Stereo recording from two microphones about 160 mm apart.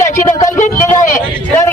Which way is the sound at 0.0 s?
20° left (ahead or behind).